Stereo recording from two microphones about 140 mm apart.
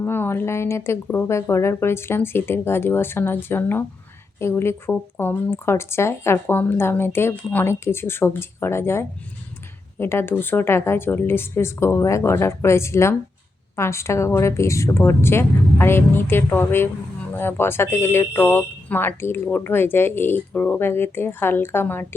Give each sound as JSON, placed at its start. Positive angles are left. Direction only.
{"t": 0.0, "sound": "speech", "side_deg": 15}